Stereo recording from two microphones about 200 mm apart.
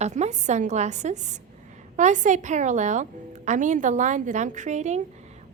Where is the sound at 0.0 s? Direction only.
35° right (ahead or behind).